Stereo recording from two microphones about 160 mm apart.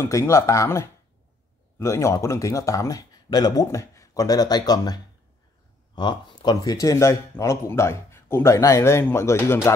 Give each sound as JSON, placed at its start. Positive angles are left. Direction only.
{"t": 0.0, "sound": "speech", "side_deg": 15}